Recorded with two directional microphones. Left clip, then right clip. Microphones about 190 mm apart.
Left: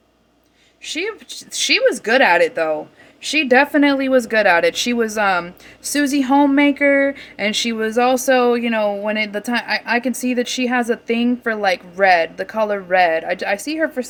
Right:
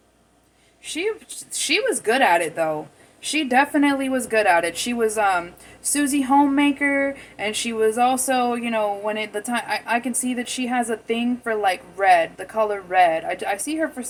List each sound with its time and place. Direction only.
0.9 s speech: 60° left (ahead or behind)